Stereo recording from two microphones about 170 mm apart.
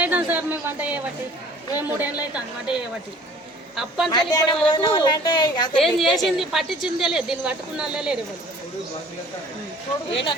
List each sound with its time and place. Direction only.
0.0 s a man's voice: 10° right (ahead or behind)
4.3 s speech: 20° left (ahead or behind)
5.8 s a woman's voice: centre (ahead or behind)